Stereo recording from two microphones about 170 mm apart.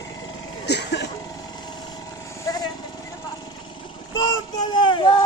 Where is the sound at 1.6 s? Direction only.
25° left (ahead or behind).